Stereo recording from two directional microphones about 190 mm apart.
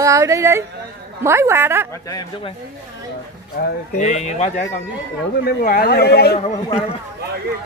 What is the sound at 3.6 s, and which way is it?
Speech, 50° left (ahead or behind).